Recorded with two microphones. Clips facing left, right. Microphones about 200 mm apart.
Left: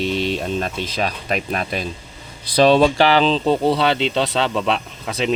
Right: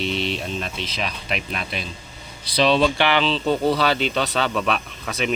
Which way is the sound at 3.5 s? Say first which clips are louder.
Left 3 dB; 25° left (ahead or behind).